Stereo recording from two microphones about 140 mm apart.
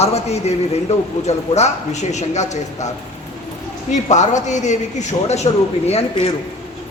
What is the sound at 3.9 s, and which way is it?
Speech, 60° left (ahead or behind).